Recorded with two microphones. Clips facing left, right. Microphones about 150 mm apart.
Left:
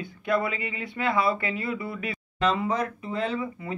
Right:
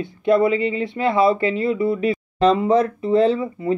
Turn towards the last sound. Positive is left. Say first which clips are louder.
# right 11 dB
turn(degrees=-30)  # may be behind; listen again after turning